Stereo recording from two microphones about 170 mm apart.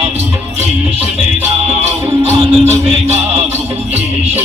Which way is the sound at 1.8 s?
35° right (ahead or behind).